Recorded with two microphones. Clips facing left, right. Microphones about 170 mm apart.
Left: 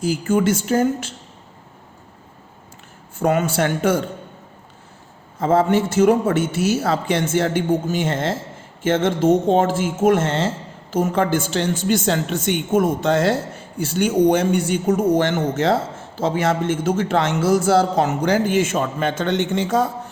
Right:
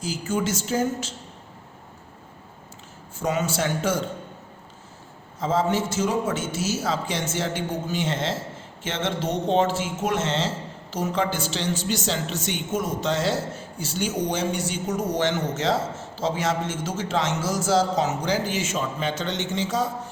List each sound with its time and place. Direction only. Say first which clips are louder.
0.0 s a woman's voice: left 8 dB; 55° left (ahead or behind)
3.2 s a woman's voice: left 6 dB; 55° left (ahead or behind)
5.4 s a woman's voice: left 6 dB; 60° left (ahead or behind)